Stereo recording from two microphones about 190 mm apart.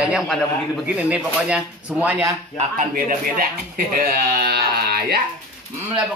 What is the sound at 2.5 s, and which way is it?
Speech, 45° right (ahead or behind).